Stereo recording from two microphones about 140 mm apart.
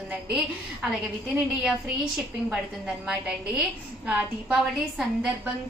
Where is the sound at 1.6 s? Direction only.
Centre (ahead or behind).